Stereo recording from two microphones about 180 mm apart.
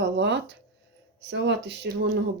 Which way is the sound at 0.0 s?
80° right.